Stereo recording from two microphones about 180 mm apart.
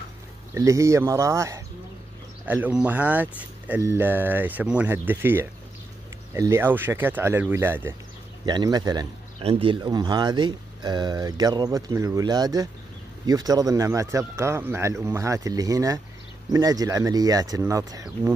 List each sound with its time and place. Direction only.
0.6 s speech: 15° right (ahead or behind)
8.5 s speech: 20° right (ahead or behind)